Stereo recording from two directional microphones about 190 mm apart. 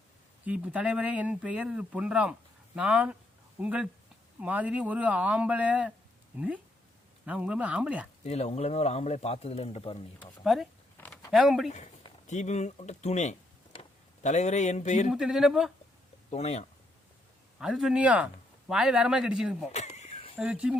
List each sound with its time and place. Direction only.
0.4 s speech: 5° right (ahead or behind)
8.2 s speech: 35° left (ahead or behind)
10.4 s speech: centre (ahead or behind)
10.9 s a sound: 10° left (ahead or behind)
12.3 s speech: 35° left (ahead or behind)
15.1 s speech: 5° right (ahead or behind)
16.3 s speech: 35° left (ahead or behind)
17.6 s speech: centre (ahead or behind)
19.7 s a sound: 35° left (ahead or behind)
20.4 s speech: 5° right (ahead or behind)